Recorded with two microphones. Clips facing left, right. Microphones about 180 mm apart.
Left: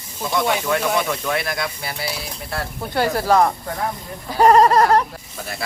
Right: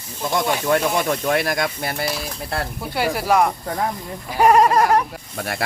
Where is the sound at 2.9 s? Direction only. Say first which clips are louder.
Left 2 dB; 10° right (ahead or behind).